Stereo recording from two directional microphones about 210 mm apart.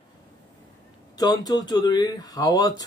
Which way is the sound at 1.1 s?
20° left (ahead or behind).